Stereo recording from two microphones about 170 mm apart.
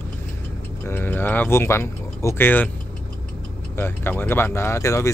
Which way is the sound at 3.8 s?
15° left (ahead or behind).